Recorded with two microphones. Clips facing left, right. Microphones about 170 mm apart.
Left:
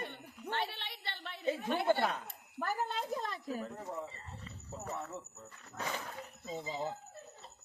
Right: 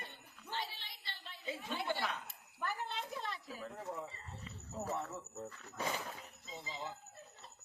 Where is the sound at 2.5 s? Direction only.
40° left (ahead or behind).